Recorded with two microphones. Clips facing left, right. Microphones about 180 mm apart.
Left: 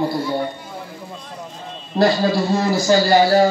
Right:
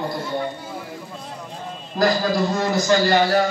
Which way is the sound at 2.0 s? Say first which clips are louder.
Left 3 dB; 30° left (ahead or behind).